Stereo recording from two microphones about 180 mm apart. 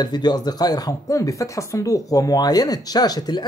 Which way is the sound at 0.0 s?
25° left (ahead or behind).